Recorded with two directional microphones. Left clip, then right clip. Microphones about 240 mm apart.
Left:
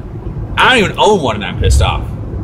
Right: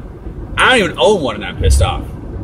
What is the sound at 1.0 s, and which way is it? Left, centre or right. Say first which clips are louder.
Speech: left 2 dB; centre.